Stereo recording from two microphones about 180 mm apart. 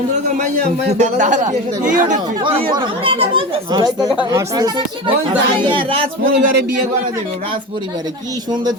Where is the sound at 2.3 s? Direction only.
25° right (ahead or behind).